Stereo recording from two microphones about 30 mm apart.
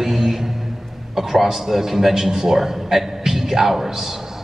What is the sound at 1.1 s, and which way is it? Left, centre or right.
A man's voice, centre.